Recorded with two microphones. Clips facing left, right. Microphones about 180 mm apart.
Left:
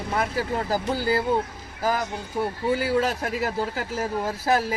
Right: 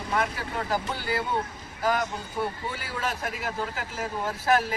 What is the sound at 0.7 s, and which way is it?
Speech, 35° left (ahead or behind).